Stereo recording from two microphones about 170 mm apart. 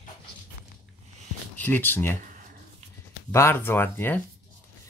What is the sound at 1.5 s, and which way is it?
Speech, 10° left (ahead or behind).